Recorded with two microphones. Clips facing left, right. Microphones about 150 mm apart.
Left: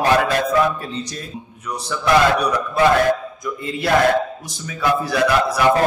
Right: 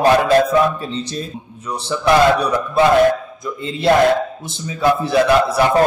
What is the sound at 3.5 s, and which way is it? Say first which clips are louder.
A man's voice: right 5 dB; 30° right (ahead or behind).